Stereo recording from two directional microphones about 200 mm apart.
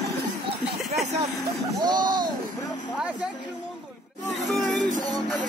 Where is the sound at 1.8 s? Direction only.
20° right (ahead or behind).